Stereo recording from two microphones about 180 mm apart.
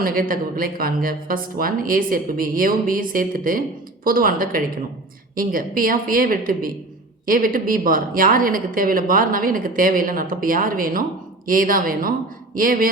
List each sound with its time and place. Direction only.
0.0 s a woman's voice: 50° right (ahead or behind)